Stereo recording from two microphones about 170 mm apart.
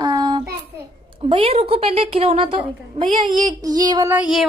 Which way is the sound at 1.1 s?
35° right (ahead or behind).